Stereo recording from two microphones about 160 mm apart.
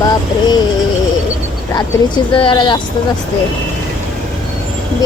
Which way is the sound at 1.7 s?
30° left (ahead or behind).